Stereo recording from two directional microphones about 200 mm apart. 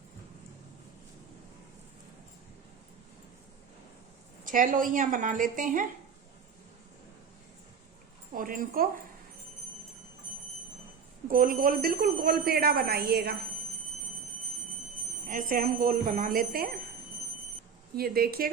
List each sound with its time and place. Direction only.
4.4 s a woman's voice: 40° right (ahead or behind)
8.3 s speech: 45° right (ahead or behind)
11.3 s a woman's voice: 45° right (ahead or behind)
15.3 s a woman's voice: 40° right (ahead or behind)
17.9 s a woman's voice: 50° right (ahead or behind)